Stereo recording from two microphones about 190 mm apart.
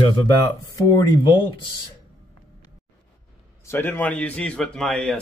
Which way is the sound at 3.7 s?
10° left (ahead or behind).